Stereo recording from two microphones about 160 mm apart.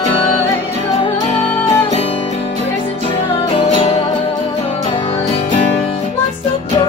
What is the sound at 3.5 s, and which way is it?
Music, 35° left (ahead or behind).